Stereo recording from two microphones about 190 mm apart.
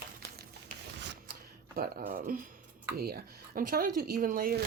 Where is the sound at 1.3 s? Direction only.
50° right (ahead or behind).